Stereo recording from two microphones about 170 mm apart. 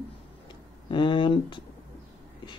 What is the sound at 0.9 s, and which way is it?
Speech, 30° left (ahead or behind).